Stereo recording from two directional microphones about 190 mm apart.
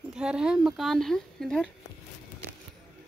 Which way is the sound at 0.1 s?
5° right (ahead or behind).